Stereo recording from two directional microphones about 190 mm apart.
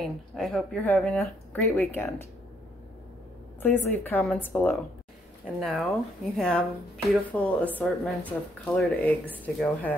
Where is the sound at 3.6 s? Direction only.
10° left (ahead or behind).